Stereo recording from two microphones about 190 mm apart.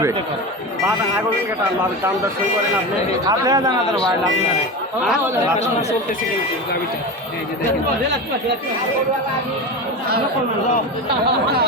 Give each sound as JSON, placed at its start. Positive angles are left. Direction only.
{"t": 3.2, "sound": "speech", "side_deg": -20}